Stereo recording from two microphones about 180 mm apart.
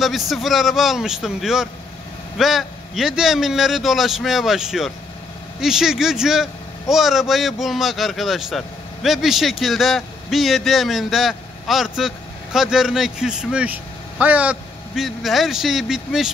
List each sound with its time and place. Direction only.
0.0 s speech: centre (ahead or behind)